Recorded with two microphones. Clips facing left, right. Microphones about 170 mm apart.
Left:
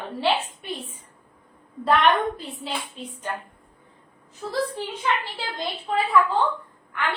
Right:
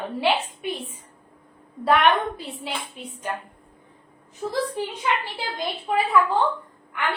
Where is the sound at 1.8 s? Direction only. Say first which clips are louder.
Even; 10° right (ahead or behind).